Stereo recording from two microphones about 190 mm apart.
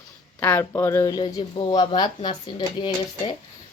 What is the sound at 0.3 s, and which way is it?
Speech, 10° left (ahead or behind).